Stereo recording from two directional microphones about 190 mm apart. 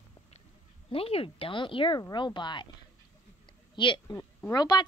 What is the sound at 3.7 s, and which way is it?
Speech, 25° left (ahead or behind).